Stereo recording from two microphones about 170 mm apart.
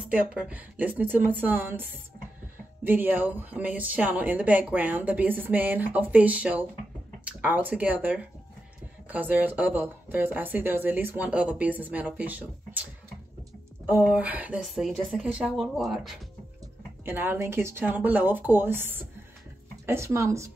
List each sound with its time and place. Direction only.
0.1 s speech: 5° right (ahead or behind)
13.8 s a woman's voice: 5° right (ahead or behind)
17.0 s speech: 10° right (ahead or behind)